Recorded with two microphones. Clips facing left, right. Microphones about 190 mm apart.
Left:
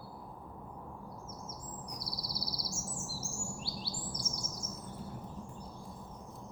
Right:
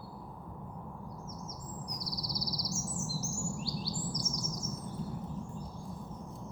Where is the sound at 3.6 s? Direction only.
30° left (ahead or behind).